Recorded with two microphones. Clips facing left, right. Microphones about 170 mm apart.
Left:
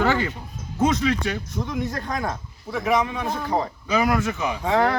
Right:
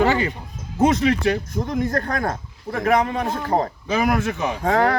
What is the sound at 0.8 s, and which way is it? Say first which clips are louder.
Speech: right 3 dB; 35° right (ahead or behind).